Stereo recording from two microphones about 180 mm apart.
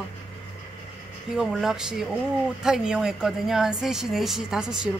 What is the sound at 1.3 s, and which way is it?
Speech, 5° right (ahead or behind).